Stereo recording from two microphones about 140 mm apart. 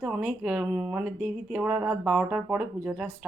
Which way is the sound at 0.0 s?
5° right (ahead or behind).